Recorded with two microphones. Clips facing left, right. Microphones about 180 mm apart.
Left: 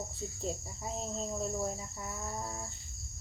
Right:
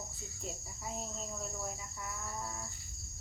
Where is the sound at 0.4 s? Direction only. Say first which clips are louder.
Left 7 dB; 30° left (ahead or behind).